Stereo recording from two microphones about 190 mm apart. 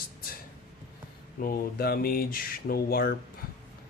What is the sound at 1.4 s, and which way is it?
Speech, 50° left (ahead or behind).